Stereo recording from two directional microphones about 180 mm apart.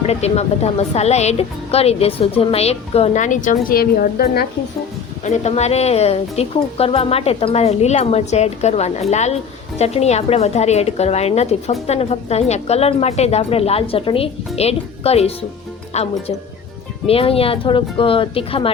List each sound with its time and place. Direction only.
0.1 s a woman's voice: 35° left (ahead or behind); by 4.4 s 55° left (ahead or behind)
5.2 s a woman's voice: 40° left (ahead or behind)